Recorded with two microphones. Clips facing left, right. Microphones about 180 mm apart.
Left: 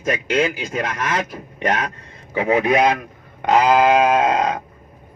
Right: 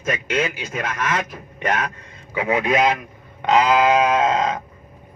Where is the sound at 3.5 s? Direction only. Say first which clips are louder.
Left 2 dB; 45° left (ahead or behind).